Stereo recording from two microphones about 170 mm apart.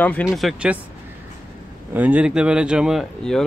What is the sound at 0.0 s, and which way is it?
Speech, 5° left (ahead or behind).